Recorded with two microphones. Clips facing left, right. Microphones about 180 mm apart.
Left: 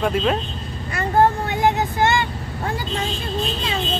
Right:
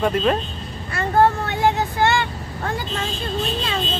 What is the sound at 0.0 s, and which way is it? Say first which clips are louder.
Speech: right 1 dB; 5° left (ahead or behind).